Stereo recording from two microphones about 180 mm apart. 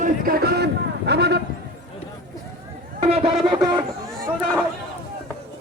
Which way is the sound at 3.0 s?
35° right (ahead or behind).